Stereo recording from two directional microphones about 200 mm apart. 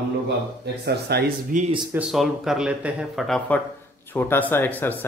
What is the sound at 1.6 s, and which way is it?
Speech, 25° right (ahead or behind).